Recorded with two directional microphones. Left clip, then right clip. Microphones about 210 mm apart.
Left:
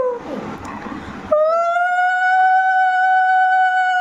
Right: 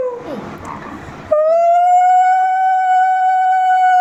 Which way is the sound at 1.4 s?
5° left (ahead or behind).